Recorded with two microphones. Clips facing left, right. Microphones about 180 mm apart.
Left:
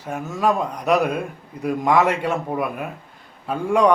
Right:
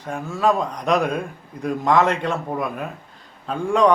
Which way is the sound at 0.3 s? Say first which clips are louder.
Right 1 dB; 10° left (ahead or behind).